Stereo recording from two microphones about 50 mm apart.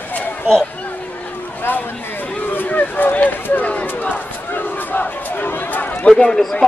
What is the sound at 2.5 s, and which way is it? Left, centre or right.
Run, left.